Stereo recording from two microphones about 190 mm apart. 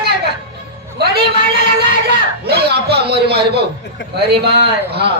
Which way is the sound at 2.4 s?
60° right (ahead or behind).